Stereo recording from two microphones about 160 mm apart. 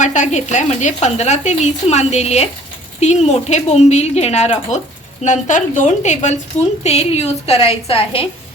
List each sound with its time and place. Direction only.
0.0 s a woman's voice: 50° left (ahead or behind)